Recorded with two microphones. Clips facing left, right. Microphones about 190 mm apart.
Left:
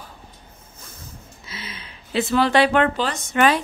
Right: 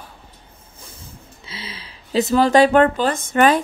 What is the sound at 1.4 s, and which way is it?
Speech, 30° right (ahead or behind).